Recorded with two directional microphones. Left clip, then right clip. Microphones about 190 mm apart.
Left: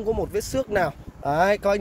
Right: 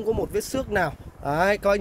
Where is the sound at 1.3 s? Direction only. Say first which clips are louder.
Left 1 dB; 10° left (ahead or behind).